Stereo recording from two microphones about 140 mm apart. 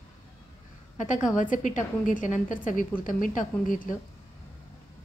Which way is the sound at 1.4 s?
65° left (ahead or behind).